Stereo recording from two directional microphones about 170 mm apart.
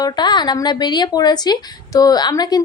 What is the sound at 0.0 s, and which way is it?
Speech, 25° left (ahead or behind).